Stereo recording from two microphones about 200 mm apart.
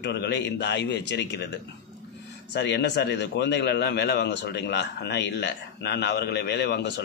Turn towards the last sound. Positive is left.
turn(degrees=60)  # may be behind; listen again after turning